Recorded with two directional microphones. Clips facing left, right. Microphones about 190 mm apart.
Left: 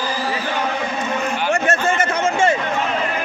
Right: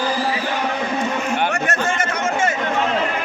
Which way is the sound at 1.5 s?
25° left (ahead or behind).